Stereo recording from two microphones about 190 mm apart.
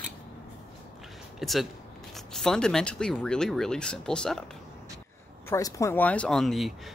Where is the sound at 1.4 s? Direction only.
Centre (ahead or behind).